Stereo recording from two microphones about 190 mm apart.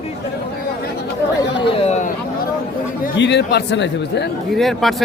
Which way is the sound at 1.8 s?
35° left (ahead or behind).